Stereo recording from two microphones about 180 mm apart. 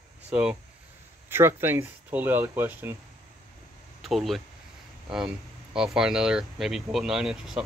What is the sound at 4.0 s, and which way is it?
Speech, centre (ahead or behind).